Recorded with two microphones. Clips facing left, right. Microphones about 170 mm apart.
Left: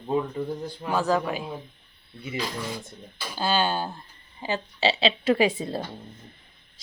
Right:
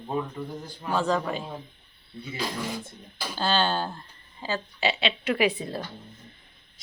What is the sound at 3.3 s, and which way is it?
A woman's voice, 10° left (ahead or behind).